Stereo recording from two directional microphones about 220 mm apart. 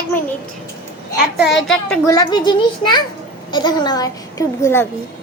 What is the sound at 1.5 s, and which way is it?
Speech, centre (ahead or behind).